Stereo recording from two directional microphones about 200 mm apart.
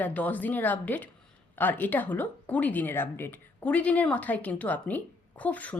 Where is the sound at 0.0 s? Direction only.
10° left (ahead or behind).